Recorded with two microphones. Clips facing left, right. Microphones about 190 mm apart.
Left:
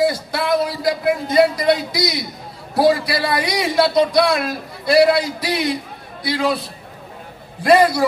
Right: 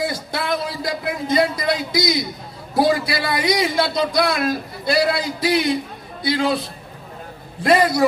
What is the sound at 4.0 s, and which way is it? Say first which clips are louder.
Speech: left 4 dB; 25° left (ahead or behind).